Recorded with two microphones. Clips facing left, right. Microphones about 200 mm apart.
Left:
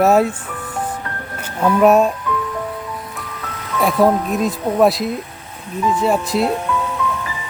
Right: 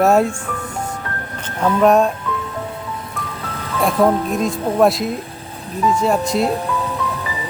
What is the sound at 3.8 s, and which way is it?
Speech, centre (ahead or behind).